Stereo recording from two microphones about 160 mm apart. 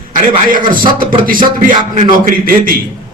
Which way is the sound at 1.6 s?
55° right (ahead or behind).